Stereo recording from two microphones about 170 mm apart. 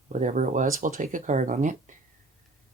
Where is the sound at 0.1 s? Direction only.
45° right (ahead or behind).